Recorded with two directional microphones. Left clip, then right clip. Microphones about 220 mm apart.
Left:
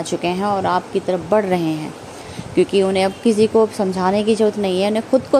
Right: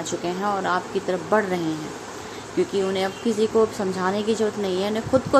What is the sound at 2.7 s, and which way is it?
Speech, 25° left (ahead or behind).